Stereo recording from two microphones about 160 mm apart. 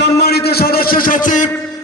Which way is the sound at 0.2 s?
85° left.